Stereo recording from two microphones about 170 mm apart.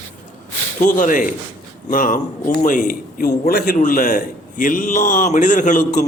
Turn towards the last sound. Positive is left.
turn(degrees=50)  # may be behind; listen again after turning